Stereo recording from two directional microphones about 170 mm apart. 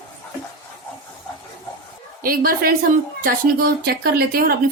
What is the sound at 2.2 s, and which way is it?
A woman's voice, 60° right (ahead or behind).